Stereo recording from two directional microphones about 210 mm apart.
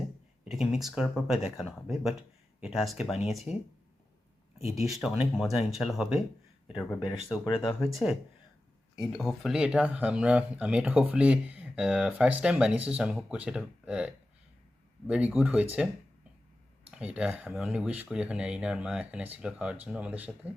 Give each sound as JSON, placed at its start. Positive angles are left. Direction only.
{"t": 0.4, "sound": "speech", "side_deg": 0}
{"t": 4.6, "sound": "speech", "side_deg": 0}
{"t": 6.7, "sound": "speech", "side_deg": 20}
{"t": 8.0, "sound": "speech", "side_deg": 0}
{"t": 16.9, "sound": "speech", "side_deg": -5}